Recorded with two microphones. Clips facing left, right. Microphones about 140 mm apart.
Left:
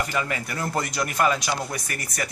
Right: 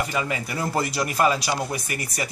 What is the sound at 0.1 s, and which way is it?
Speech, 15° right (ahead or behind).